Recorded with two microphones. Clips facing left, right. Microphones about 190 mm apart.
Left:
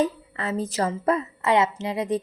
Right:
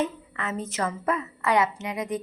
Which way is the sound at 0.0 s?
35° left (ahead or behind).